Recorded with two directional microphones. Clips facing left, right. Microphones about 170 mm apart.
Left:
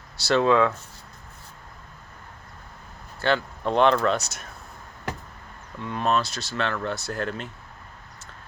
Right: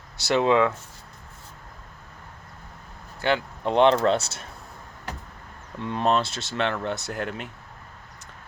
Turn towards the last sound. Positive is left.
turn(degrees=-15)  # may be behind; listen again after turning